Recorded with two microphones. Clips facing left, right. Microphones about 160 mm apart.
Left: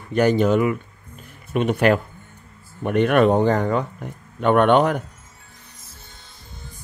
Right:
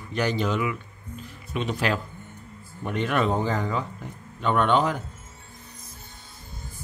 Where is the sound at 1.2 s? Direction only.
55° left (ahead or behind).